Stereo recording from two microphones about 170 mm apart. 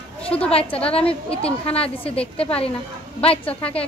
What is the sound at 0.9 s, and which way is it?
A woman's voice, 35° left (ahead or behind).